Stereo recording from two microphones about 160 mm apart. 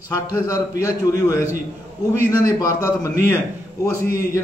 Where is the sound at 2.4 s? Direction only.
20° left (ahead or behind).